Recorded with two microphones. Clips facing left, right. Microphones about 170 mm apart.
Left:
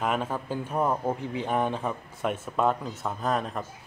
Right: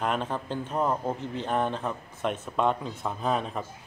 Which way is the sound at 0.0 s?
5° left (ahead or behind).